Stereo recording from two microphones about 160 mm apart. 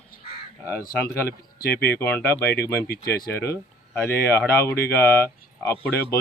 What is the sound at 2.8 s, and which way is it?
Speech, 80° left.